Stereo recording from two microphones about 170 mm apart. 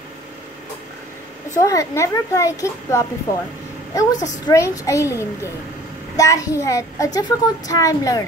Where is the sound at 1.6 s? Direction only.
20° left (ahead or behind).